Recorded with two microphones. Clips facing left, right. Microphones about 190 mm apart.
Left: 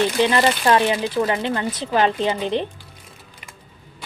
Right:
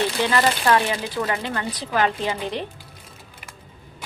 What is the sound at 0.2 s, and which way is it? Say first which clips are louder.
Speech: left 3 dB; 25° left (ahead or behind).